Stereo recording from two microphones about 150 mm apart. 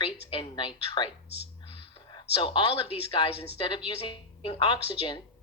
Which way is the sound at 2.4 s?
35° left (ahead or behind).